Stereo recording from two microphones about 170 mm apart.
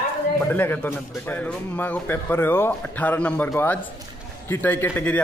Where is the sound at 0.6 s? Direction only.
10° left (ahead or behind).